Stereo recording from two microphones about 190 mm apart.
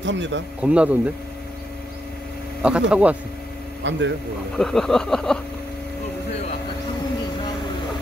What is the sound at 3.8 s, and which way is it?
Speech, 75° right (ahead or behind).